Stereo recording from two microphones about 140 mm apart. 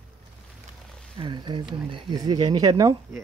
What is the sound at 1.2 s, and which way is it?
Speech, 35° right (ahead or behind).